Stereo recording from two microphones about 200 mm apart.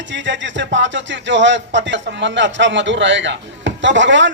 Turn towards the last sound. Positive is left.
turn(degrees=-65)  # may be behind; listen again after turning